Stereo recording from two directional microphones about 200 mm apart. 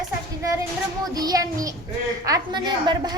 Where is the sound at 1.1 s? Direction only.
20° right (ahead or behind).